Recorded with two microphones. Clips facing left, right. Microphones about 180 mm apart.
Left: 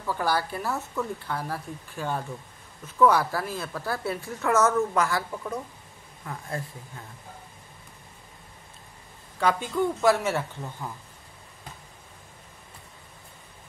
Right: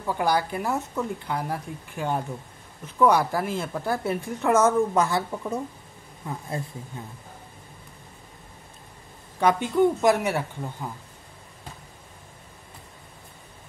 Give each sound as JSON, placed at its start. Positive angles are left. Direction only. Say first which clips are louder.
{"t": 0.0, "sound": "a woman's voice", "louder": "right 3 dB", "side_deg": -15}
{"t": 9.4, "sound": "speech", "louder": "right 5 dB", "side_deg": -20}